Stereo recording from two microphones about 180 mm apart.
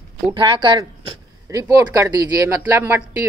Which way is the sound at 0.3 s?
25° right (ahead or behind).